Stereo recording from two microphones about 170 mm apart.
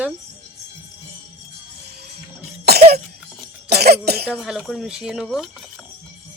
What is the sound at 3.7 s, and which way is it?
Cough, 70° right (ahead or behind).